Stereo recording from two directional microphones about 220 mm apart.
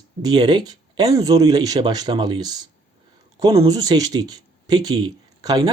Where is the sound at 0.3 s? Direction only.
20° right (ahead or behind).